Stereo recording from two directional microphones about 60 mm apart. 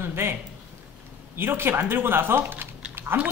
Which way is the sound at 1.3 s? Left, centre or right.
Right.